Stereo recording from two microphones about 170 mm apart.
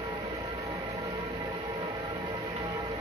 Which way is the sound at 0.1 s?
25° right (ahead or behind).